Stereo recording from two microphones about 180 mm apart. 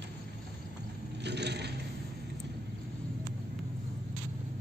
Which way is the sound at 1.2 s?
70° right (ahead or behind).